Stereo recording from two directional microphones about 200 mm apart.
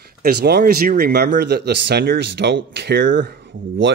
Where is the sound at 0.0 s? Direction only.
50° right (ahead or behind).